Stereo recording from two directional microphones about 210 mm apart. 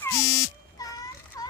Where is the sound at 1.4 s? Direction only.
15° left (ahead or behind).